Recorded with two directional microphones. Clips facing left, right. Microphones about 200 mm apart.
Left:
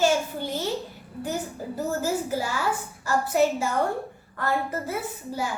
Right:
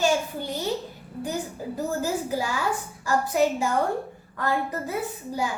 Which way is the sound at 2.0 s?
15° right (ahead or behind).